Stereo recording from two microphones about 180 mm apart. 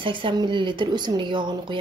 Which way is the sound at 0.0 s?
30° right (ahead or behind).